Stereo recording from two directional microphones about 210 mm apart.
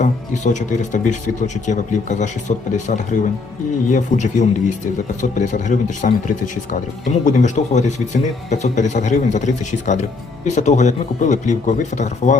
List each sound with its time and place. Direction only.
0.0 s speech: 35° left (ahead or behind)